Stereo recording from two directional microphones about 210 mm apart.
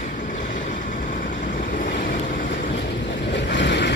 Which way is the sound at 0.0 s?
35° left (ahead or behind).